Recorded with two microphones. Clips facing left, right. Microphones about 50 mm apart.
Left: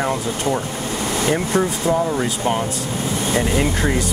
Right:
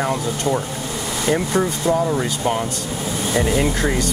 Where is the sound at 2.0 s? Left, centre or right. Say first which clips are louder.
Even; centre.